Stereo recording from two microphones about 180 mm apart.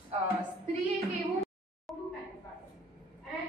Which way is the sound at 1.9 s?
Centre (ahead or behind).